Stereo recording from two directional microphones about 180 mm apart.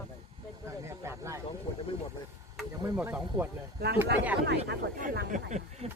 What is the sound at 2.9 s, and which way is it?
Speech, 10° right (ahead or behind).